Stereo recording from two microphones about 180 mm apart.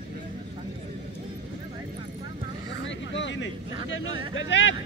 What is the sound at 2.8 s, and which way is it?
Vehicle, 90° left.